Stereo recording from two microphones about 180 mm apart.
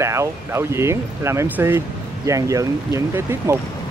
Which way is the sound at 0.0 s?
15° right (ahead or behind).